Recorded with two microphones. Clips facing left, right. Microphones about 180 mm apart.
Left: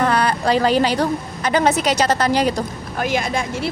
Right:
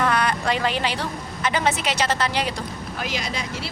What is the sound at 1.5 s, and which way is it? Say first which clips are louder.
Speech: left 6 dB; 40° left (ahead or behind).